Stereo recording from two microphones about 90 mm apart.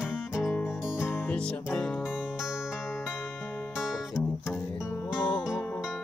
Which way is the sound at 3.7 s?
10° right (ahead or behind).